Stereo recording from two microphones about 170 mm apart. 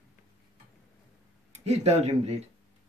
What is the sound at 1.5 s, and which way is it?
Speech, 40° right (ahead or behind).